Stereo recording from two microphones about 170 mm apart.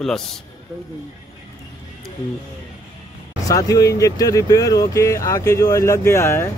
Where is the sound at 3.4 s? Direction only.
20° left (ahead or behind).